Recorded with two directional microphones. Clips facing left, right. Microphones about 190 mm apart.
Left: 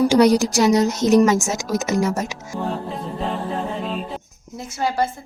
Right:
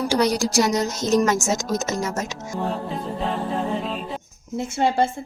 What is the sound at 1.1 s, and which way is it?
A woman's voice, 10° left (ahead or behind).